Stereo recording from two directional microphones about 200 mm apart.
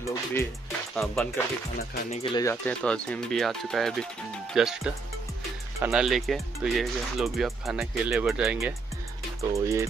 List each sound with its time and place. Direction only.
0.1 s speech: 15° left (ahead or behind)
0.9 s speech: centre (ahead or behind)
2.0 s speech: 30° left (ahead or behind)
2.6 s speech: 5° left (ahead or behind)
9.4 s music: 15° right (ahead or behind)